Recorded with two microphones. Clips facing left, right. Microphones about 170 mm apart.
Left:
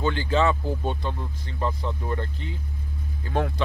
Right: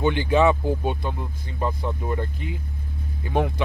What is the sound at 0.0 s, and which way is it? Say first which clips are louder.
Speech: right 4 dB; 15° right (ahead or behind).